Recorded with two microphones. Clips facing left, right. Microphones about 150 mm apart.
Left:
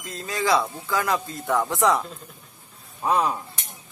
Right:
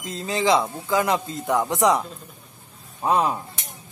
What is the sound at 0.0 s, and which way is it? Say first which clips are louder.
Speech: right 4 dB; 25° right (ahead or behind).